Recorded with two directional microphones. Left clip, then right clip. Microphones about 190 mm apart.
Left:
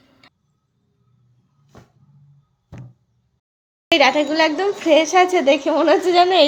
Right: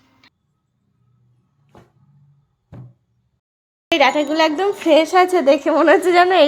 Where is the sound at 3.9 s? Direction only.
Centre (ahead or behind).